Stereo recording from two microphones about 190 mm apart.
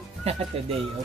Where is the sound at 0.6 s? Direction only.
30° right (ahead or behind).